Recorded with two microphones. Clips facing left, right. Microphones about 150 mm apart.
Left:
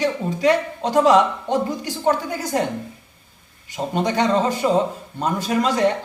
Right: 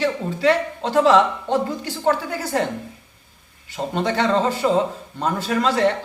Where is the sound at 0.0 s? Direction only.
15° left (ahead or behind).